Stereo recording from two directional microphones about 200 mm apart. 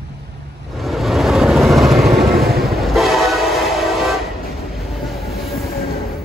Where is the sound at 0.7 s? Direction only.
Centre (ahead or behind).